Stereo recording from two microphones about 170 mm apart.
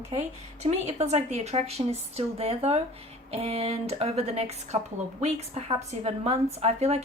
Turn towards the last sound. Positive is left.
turn(degrees=-40)  # may be behind; listen again after turning